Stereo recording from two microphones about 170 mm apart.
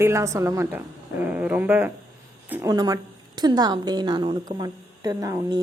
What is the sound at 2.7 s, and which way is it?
A woman's voice, 20° right (ahead or behind).